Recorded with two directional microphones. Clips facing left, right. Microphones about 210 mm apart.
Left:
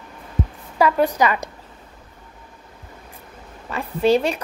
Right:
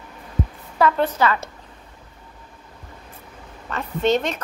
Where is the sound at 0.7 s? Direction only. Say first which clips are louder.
Left 2 dB; 10° left (ahead or behind).